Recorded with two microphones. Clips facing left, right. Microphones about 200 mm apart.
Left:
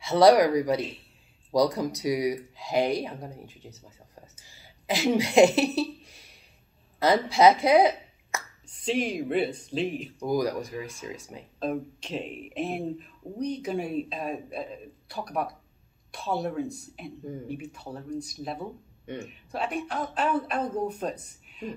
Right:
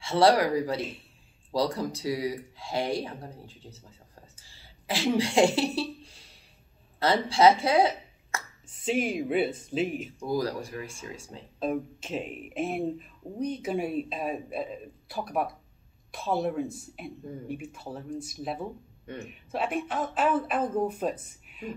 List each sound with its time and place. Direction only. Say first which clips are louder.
0.1 s a woman's voice: left 4 dB; 20° left (ahead or behind)
7.3 s speech: left 2 dB; 15° left (ahead or behind)
8.6 s speech: even; 5° right (ahead or behind)
10.1 s speech: left 4 dB; 15° left (ahead or behind)
11.6 s speech: right 1 dB; 5° right (ahead or behind)